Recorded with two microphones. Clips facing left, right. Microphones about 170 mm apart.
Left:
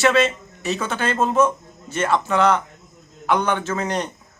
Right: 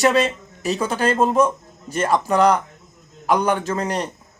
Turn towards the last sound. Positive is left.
turn(degrees=-35)  # may be behind; listen again after turning